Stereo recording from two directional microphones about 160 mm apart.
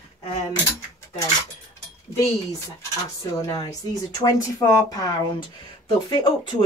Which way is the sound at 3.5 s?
20° left (ahead or behind).